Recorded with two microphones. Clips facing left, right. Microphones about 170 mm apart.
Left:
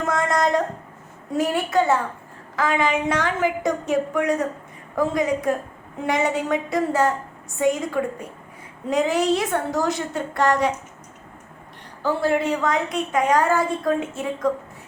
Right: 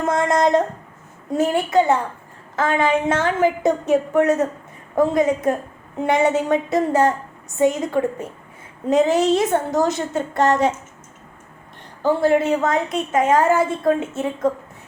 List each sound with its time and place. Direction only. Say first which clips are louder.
0.0 s a woman's voice: right 4 dB; 20° right (ahead or behind)
12.0 s a woman's voice: right 4 dB; 20° right (ahead or behind)